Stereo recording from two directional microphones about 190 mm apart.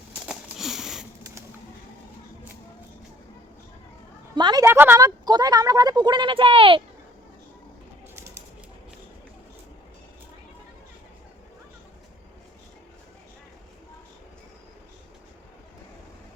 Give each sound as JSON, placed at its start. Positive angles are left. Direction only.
{"t": 0.3, "sound": "sniff", "side_deg": -5}
{"t": 4.4, "sound": "a woman's voice", "side_deg": -20}
{"t": 8.1, "sound": "a sound", "side_deg": -15}